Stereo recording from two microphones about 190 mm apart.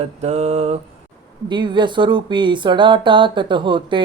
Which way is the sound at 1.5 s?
25° right (ahead or behind).